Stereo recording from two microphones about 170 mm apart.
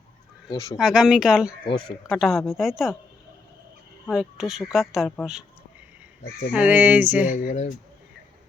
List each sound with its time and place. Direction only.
0.5 s speech: 20° left (ahead or behind)
0.8 s a woman's voice: 5° right (ahead or behind)
4.1 s a woman's voice: 5° right (ahead or behind)
6.5 s a sound: 10° right (ahead or behind)
7.3 s speech: 45° left (ahead or behind)